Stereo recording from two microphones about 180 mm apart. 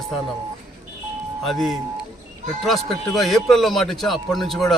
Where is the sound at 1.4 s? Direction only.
Centre (ahead or behind).